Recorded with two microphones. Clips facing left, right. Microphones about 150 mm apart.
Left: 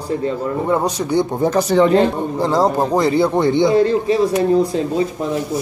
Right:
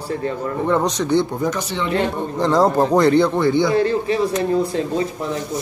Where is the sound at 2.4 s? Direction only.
5° left (ahead or behind).